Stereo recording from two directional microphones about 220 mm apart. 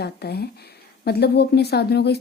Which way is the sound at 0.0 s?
45° left (ahead or behind).